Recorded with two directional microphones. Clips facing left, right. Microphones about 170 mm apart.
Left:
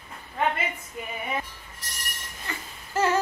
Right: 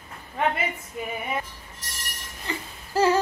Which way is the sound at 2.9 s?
30° right (ahead or behind).